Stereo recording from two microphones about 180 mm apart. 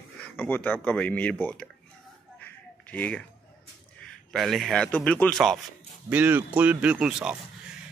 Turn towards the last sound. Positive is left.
turn(degrees=-5)  # may be behind; listen again after turning